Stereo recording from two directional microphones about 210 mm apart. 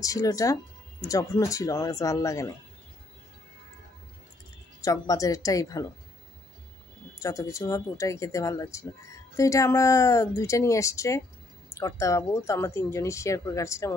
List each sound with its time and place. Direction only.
0.0 s speech: 15° left (ahead or behind)
4.8 s speech: 15° left (ahead or behind)
7.2 s speech: 15° left (ahead or behind)